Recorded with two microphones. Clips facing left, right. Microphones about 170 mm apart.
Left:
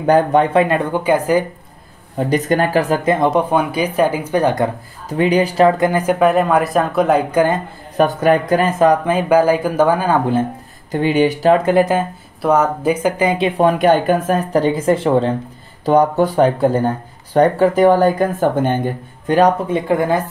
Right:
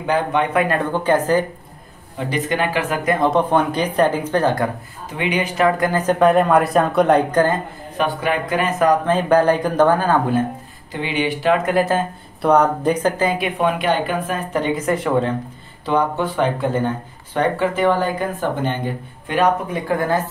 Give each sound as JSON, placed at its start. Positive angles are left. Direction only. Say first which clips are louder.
{"t": 0.0, "sound": "speech", "louder": "left 6 dB", "side_deg": 40}
{"t": 2.1, "sound": "speech", "louder": "left 6 dB", "side_deg": 40}
{"t": 3.1, "sound": "speech", "louder": "right 2 dB", "side_deg": 20}
{"t": 5.1, "sound": "speech", "louder": "left 7 dB", "side_deg": 40}
{"t": 5.8, "sound": "speech", "louder": "left 2 dB", "side_deg": 15}
{"t": 8.0, "sound": "speech", "louder": "left 7 dB", "side_deg": 45}
{"t": 9.0, "sound": "speech", "louder": "left 2 dB", "side_deg": 10}
{"t": 10.9, "sound": "speech", "louder": "left 7 dB", "side_deg": 45}
{"t": 11.7, "sound": "speech", "louder": "left 4 dB", "side_deg": 15}
{"t": 12.4, "sound": "speech", "louder": "even", "side_deg": 5}
{"t": 13.6, "sound": "speech", "louder": "left 7 dB", "side_deg": 40}
{"t": 15.8, "sound": "speech", "louder": "left 6 dB", "side_deg": 40}
{"t": 19.7, "sound": "speech", "louder": "left 4 dB", "side_deg": 20}